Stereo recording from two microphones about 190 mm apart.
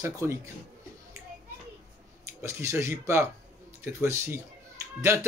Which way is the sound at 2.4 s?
15° right (ahead or behind).